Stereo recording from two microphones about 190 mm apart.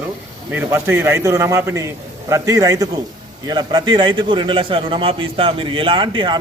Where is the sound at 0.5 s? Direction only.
10° right (ahead or behind).